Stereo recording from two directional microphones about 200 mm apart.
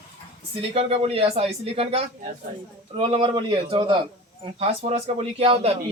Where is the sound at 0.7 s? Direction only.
30° right (ahead or behind).